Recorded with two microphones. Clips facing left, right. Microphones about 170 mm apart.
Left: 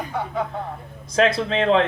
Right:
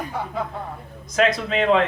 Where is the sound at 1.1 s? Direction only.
30° left (ahead or behind).